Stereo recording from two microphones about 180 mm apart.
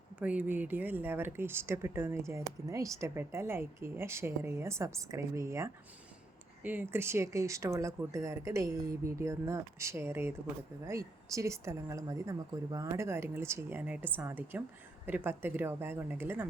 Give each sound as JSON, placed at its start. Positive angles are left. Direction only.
{"t": 0.2, "sound": "speech", "side_deg": -10}